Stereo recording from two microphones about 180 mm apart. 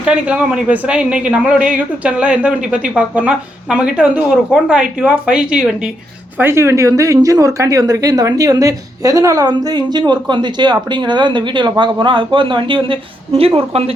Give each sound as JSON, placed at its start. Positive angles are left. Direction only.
{"t": 0.0, "sound": "a woman's voice", "side_deg": -5}